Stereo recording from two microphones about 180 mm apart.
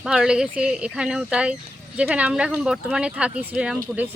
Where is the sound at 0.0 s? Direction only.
5° right (ahead or behind).